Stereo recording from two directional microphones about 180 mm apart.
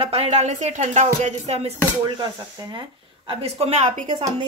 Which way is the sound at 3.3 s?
35° right (ahead or behind).